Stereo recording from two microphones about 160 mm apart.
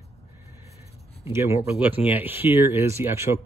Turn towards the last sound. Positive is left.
turn(degrees=-15)  # may be behind; listen again after turning